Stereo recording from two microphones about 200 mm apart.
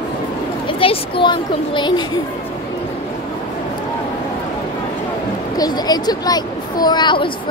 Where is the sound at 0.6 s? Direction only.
25° left (ahead or behind).